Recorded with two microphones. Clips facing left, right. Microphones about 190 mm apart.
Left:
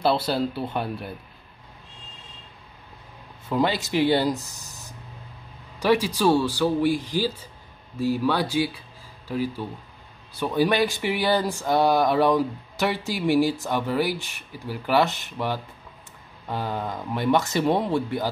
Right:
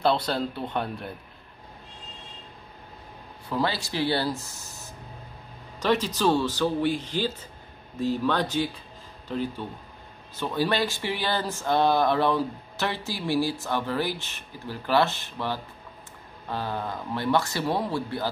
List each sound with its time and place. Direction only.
0.0 s speech: 5° left (ahead or behind)
3.4 s speech: 20° left (ahead or behind)